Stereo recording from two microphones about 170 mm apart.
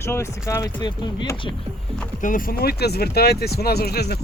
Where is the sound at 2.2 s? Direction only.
55° left (ahead or behind).